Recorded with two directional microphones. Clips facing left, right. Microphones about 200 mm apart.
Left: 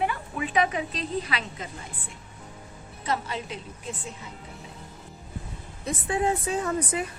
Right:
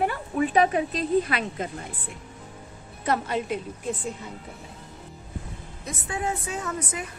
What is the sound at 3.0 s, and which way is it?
Speech, 50° right (ahead or behind).